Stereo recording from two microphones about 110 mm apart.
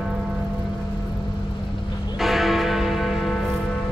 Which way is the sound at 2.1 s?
Centre (ahead or behind).